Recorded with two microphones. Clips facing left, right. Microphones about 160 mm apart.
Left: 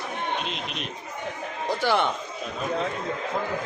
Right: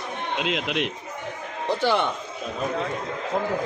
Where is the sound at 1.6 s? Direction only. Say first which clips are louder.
Right 1 dB; 10° left (ahead or behind).